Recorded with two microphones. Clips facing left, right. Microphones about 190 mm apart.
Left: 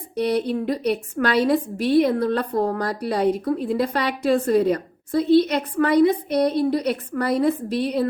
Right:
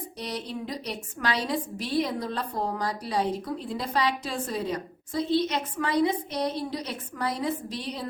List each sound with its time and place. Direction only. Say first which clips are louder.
0.2 s a woman's voice: left 13 dB; 60° left (ahead or behind)